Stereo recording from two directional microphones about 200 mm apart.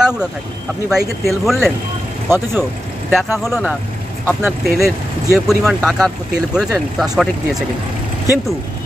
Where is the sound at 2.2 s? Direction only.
10° right (ahead or behind).